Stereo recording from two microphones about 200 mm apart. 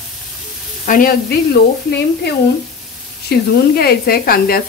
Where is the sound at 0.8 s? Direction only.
45° left (ahead or behind).